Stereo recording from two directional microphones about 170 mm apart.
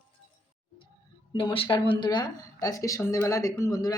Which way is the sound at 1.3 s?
30° left (ahead or behind).